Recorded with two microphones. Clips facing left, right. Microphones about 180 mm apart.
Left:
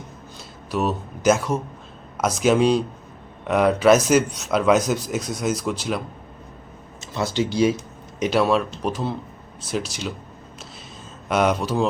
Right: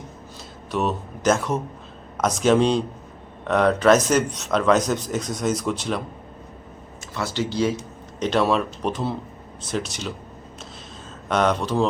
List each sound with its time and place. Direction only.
0.7 s a man's voice: 5° left (ahead or behind)
7.0 s a man's voice: 20° left (ahead or behind); by 10.1 s centre (ahead or behind)
11.3 s a man's voice: 5° left (ahead or behind)